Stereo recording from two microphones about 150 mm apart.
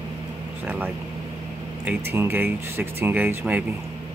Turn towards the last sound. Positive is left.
turn(degrees=-10)  # may be behind; listen again after turning